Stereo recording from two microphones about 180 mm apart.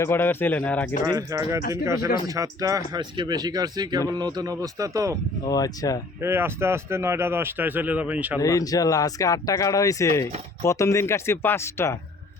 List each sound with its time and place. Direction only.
0.0 s speech: 10° left (ahead or behind)
1.0 s speech: 20° right (ahead or behind)
5.5 s speech: 20° left (ahead or behind)
6.1 s speech: 15° right (ahead or behind)
8.4 s speech: 20° left (ahead or behind)